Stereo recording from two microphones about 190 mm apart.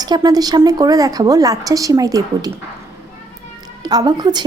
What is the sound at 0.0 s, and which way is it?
A woman's voice, 20° right (ahead or behind).